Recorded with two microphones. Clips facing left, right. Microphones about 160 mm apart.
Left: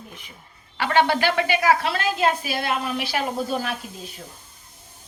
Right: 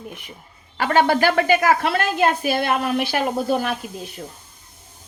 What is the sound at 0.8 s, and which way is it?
A woman's voice, 45° right (ahead or behind).